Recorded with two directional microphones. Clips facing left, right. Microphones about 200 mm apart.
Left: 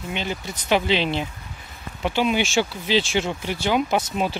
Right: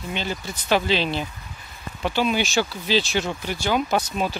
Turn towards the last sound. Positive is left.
turn(degrees=20)  # may be behind; listen again after turning